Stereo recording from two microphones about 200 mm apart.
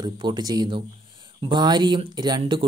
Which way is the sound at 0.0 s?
20° right (ahead or behind).